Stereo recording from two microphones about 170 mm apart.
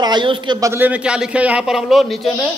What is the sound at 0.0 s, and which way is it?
A man's voice, 25° right (ahead or behind).